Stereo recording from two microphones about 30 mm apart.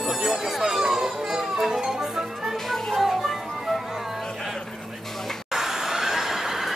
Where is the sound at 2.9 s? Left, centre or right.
Centre.